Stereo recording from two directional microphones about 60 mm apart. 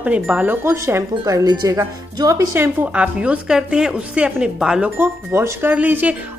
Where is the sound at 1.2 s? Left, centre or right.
Right.